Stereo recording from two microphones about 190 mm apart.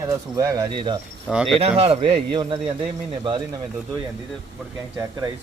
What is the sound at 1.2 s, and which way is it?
Speech, centre (ahead or behind).